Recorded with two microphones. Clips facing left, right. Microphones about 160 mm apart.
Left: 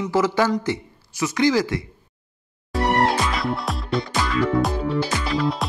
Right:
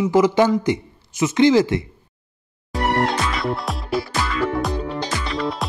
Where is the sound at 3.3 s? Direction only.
Centre (ahead or behind).